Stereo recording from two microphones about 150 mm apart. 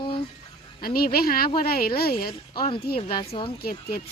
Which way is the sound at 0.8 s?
90° left.